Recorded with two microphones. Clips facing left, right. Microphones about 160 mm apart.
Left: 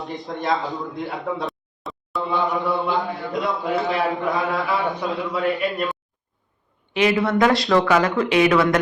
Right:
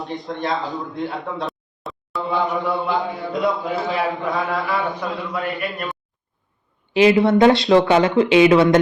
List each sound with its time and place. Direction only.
0.0 s a man's voice: centre (ahead or behind)
4.9 s a man's voice: 20° left (ahead or behind)
6.9 s speech: 30° right (ahead or behind)